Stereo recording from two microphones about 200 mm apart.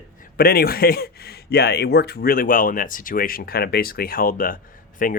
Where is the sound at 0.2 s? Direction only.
50° left (ahead or behind).